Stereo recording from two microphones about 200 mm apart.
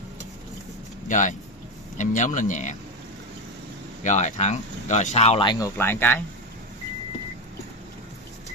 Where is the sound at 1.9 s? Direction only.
40° left (ahead or behind).